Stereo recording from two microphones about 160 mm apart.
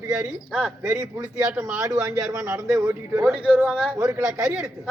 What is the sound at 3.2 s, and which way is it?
A man's voice, centre (ahead or behind).